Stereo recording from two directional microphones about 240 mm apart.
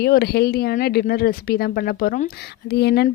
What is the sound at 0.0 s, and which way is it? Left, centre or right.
Speech, left.